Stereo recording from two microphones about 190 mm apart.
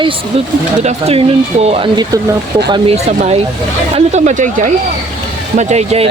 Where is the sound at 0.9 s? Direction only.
35° right (ahead or behind).